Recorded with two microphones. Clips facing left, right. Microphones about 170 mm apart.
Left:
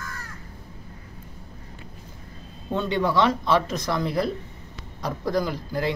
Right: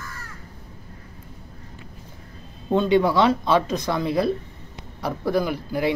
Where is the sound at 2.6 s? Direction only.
15° right (ahead or behind).